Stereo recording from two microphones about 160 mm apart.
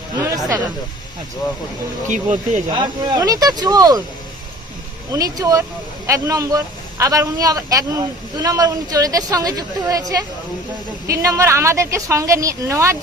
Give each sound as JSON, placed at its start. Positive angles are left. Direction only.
{"t": 0.3, "sound": "speech", "side_deg": -20}
{"t": 2.0, "sound": "speech", "side_deg": -50}
{"t": 2.6, "sound": "speech", "side_deg": -25}
{"t": 5.1, "sound": "a woman's voice", "side_deg": -20}